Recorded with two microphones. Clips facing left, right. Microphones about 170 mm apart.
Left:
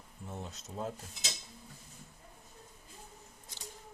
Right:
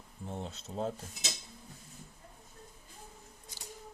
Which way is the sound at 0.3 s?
30° right (ahead or behind).